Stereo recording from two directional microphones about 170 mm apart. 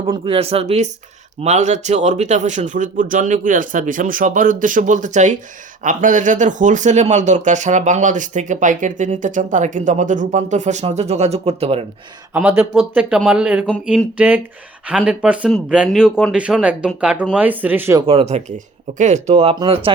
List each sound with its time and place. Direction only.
0.0 s speech: 35° right (ahead or behind)
12.3 s speech: 10° right (ahead or behind)
18.0 s speech: 35° right (ahead or behind)